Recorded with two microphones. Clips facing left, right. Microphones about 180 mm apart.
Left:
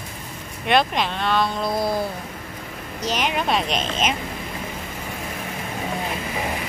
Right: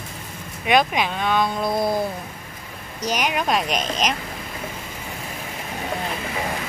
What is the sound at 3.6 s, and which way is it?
Speech, 45° right (ahead or behind).